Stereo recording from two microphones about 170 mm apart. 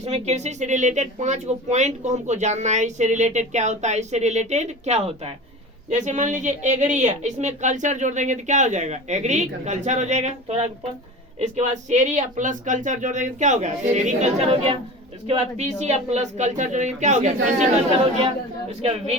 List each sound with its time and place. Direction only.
0.0 s a woman's voice: 40° right (ahead or behind)